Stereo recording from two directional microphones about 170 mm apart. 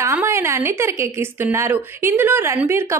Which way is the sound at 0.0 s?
15° right (ahead or behind).